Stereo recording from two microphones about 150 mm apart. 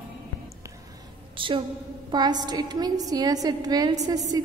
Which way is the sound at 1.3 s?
35° right (ahead or behind).